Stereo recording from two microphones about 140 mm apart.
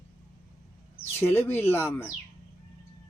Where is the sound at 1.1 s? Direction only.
15° left (ahead or behind).